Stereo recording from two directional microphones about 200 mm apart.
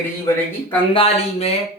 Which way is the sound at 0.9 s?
30° left (ahead or behind).